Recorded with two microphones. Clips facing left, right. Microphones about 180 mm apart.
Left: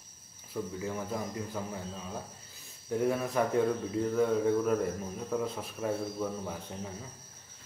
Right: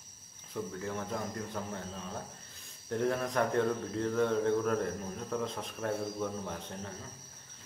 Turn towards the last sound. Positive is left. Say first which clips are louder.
# left 1 dB
turn(degrees=10)  # may be behind; listen again after turning